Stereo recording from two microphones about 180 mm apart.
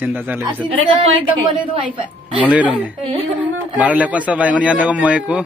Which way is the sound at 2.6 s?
10° right (ahead or behind).